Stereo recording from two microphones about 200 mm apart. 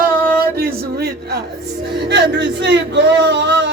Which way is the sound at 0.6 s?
50° right (ahead or behind).